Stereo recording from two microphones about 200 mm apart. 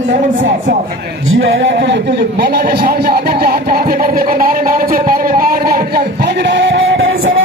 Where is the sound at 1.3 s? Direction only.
70° right (ahead or behind).